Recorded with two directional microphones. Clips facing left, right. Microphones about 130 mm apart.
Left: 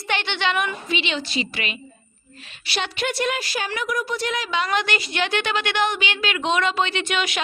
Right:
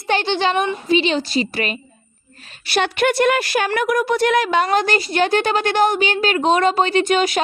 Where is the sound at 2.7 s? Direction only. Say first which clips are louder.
Right 8 dB; 55° right (ahead or behind).